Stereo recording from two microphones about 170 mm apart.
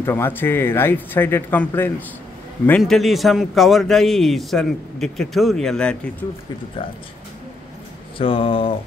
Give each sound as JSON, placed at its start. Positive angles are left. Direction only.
{"t": 0.0, "sound": "speech", "side_deg": 15}
{"t": 2.8, "sound": "a man's voice", "side_deg": 0}
{"t": 8.2, "sound": "speech", "side_deg": 30}